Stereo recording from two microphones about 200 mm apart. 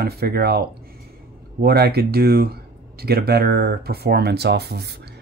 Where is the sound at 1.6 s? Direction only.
50° right (ahead or behind).